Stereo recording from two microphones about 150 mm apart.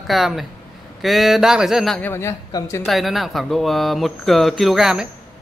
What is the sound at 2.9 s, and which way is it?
Speech, centre (ahead or behind).